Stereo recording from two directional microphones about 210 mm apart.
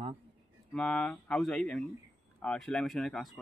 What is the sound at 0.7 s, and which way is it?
Speech, 5° left (ahead or behind).